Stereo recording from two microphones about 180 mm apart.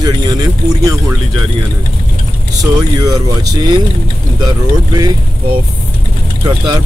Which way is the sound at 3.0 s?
20° right (ahead or behind).